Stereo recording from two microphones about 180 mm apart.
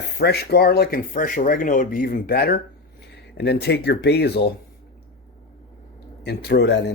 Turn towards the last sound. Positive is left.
turn(degrees=70)  # may be behind; listen again after turning